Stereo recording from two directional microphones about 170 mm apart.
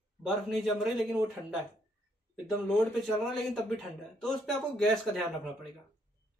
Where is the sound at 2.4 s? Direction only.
5° left (ahead or behind).